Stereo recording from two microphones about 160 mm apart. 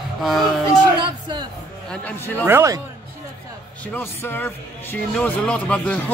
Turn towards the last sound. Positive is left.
turn(degrees=10)  # may be behind; listen again after turning